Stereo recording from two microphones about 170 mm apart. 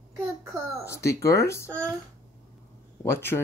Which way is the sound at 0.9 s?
15° left (ahead or behind).